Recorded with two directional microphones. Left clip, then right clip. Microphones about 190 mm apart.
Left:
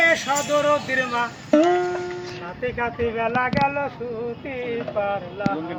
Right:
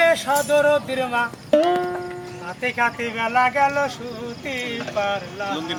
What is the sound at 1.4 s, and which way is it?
Music, 40° right (ahead or behind).